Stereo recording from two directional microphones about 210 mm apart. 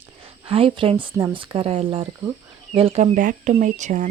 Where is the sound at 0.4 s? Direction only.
25° right (ahead or behind).